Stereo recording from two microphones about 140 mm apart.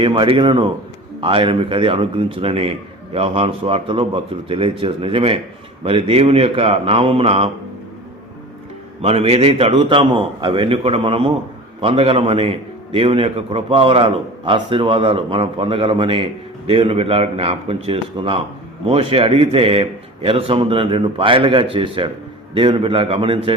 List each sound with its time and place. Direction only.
0.0 s a man's voice: 35° right (ahead or behind)
9.0 s a man's voice: 45° right (ahead or behind)